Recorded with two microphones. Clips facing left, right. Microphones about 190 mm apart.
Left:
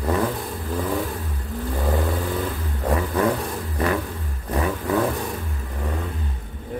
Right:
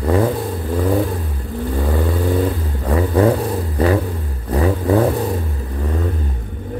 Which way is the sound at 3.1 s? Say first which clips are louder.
Right 8 dB; 35° right (ahead or behind).